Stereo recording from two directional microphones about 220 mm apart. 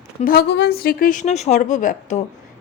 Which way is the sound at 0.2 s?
40° left (ahead or behind).